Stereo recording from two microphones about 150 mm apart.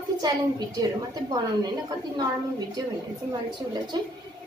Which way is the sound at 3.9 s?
30° right (ahead or behind).